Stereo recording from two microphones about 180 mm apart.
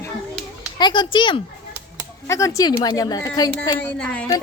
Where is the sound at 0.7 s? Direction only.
25° left (ahead or behind).